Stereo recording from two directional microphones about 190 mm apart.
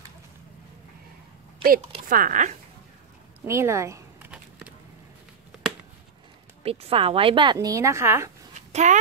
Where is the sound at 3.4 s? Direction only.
15° right (ahead or behind).